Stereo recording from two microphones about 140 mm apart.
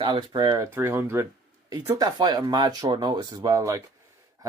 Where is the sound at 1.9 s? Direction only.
30° right (ahead or behind).